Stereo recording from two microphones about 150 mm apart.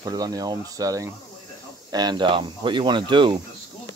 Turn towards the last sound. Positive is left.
turn(degrees=-30)  # may be behind; listen again after turning